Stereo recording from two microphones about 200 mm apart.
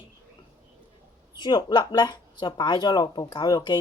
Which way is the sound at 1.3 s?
20° left (ahead or behind).